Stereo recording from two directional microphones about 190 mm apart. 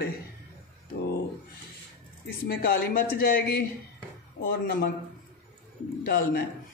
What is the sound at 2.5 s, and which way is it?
Speech, 50° left (ahead or behind).